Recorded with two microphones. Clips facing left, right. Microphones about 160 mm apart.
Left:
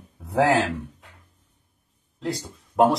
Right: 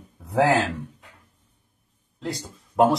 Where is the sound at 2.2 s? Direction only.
Centre (ahead or behind).